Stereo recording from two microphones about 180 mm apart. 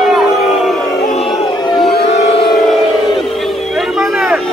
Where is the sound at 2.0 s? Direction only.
35° left (ahead or behind).